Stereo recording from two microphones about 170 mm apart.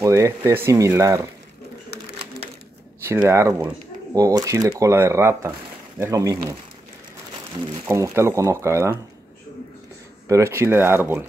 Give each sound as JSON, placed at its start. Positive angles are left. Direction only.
{"t": 0.0, "sound": "speech", "side_deg": -20}
{"t": 3.1, "sound": "speech", "side_deg": -15}
{"t": 7.9, "sound": "speech", "side_deg": -15}
{"t": 10.2, "sound": "speech", "side_deg": -15}